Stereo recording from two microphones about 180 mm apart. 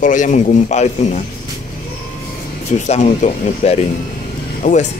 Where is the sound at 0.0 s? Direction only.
45° left (ahead or behind).